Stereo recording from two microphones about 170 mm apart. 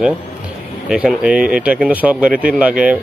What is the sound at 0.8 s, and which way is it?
Speech, 5° right (ahead or behind).